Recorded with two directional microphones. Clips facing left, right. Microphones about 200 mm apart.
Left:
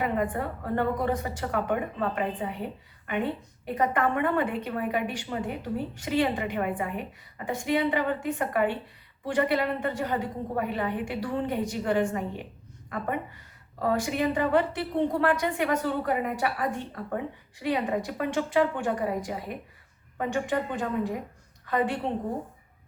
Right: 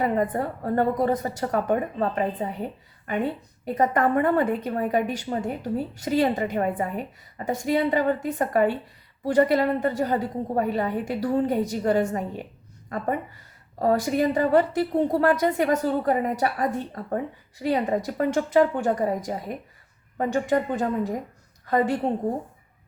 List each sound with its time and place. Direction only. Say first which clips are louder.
0.0 s a woman's voice: right 4 dB; 40° right (ahead or behind)
3.8 s a woman's voice: right 4 dB; 40° right (ahead or behind)
13.7 s a woman's voice: right 5 dB; 40° right (ahead or behind)